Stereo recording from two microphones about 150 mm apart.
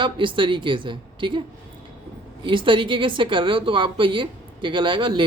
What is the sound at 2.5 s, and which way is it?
A woman's voice, 35° right (ahead or behind).